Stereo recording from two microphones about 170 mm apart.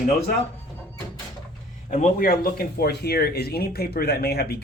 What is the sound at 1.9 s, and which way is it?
Speech, 50° left (ahead or behind).